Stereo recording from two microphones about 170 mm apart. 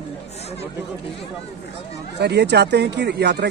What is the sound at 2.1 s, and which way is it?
Speech, 80° right.